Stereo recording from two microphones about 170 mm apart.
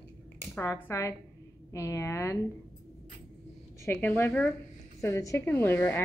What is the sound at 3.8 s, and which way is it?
Speech, 15° left (ahead or behind).